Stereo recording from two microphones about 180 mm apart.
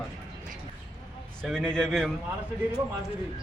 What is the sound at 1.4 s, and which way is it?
Speech, 5° left (ahead or behind).